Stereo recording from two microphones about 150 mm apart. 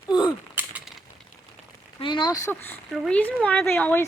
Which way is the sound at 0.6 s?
15° right (ahead or behind).